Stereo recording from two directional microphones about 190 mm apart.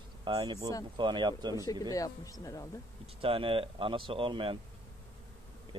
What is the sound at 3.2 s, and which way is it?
Speech, 30° right (ahead or behind).